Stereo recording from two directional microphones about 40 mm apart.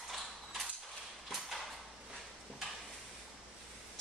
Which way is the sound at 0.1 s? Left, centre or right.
Centre.